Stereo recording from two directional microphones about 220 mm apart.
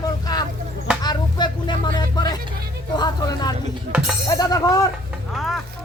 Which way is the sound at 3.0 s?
20° left (ahead or behind).